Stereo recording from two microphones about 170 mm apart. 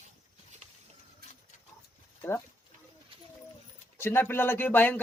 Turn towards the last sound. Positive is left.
turn(degrees=10)  # may be behind; listen again after turning